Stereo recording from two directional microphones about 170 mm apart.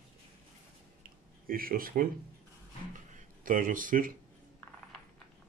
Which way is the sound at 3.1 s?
55° right (ahead or behind).